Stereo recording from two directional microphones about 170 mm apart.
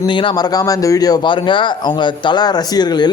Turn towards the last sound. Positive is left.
turn(degrees=25)  # may be behind; listen again after turning